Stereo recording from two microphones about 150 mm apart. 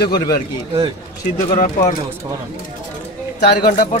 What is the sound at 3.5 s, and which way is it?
Speech, 75° left (ahead or behind).